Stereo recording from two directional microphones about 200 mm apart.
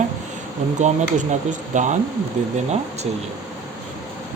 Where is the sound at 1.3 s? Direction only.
35° right (ahead or behind).